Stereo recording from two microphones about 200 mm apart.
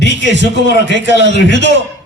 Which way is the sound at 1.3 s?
60° left (ahead or behind).